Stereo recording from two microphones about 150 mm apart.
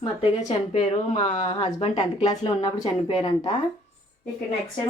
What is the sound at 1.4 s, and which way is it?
Speech, 30° left (ahead or behind).